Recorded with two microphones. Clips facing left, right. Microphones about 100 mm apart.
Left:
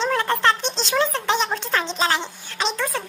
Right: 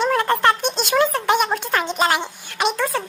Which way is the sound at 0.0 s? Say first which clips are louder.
Right 3 dB; 10° right (ahead or behind).